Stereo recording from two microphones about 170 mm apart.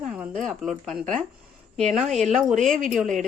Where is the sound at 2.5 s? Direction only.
50° right (ahead or behind).